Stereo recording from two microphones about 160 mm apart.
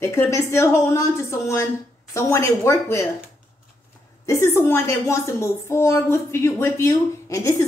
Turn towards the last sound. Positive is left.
turn(degrees=20)  # may be behind; listen again after turning